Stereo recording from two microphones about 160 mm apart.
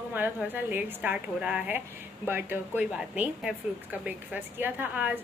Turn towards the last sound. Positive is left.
turn(degrees=-10)  # may be behind; listen again after turning